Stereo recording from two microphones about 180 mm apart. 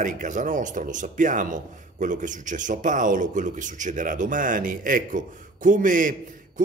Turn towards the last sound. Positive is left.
turn(degrees=-45)  # may be behind; listen again after turning